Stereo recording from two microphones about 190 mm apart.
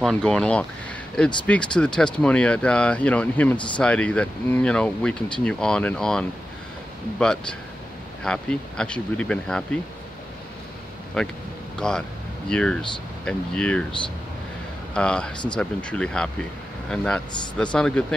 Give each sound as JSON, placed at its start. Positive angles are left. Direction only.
{"t": 0.0, "sound": "speech", "side_deg": 5}
{"t": 3.5, "sound": "speech", "side_deg": 25}
{"t": 3.8, "sound": "speech", "side_deg": 5}
{"t": 11.2, "sound": "speech", "side_deg": 5}
{"t": 15.0, "sound": "speech", "side_deg": 5}